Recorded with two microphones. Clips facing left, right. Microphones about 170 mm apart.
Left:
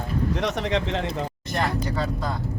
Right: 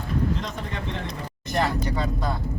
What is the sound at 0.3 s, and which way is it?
Speech, 75° left (ahead or behind).